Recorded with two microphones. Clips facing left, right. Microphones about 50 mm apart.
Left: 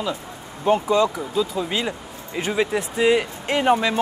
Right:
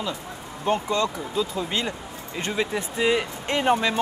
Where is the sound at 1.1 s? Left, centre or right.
Centre.